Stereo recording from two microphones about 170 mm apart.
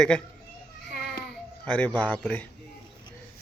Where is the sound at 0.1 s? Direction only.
5° left (ahead or behind).